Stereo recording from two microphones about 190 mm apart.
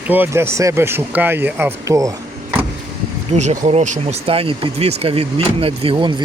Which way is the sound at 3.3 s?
40° right (ahead or behind).